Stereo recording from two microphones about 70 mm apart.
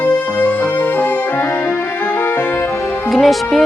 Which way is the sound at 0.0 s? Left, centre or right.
Left.